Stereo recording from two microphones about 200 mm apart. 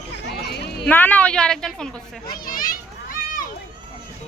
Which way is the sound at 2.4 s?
45° left (ahead or behind).